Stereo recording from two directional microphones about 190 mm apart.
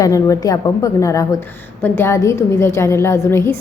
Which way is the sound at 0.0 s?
15° left (ahead or behind).